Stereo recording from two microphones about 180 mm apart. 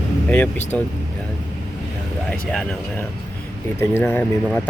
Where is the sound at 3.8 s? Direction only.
10° left (ahead or behind).